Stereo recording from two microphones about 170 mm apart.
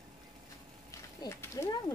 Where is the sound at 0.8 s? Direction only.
20° left (ahead or behind).